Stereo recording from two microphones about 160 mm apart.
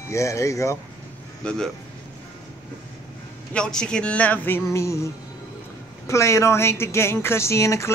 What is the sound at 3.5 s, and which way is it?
Speech, 5° left (ahead or behind).